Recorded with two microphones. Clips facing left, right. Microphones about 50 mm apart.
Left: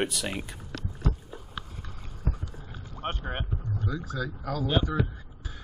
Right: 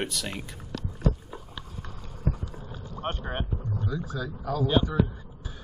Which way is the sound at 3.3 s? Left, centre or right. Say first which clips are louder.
Right 2 dB; centre.